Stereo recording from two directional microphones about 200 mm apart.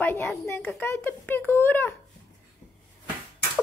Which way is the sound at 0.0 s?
10° left (ahead or behind).